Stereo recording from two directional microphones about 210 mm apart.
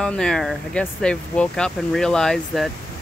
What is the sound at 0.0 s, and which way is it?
Speech, 5° left (ahead or behind).